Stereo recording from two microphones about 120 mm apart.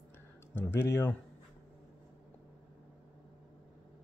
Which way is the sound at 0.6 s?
20° left (ahead or behind).